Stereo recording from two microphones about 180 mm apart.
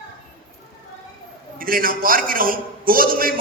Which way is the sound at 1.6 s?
50° right (ahead or behind).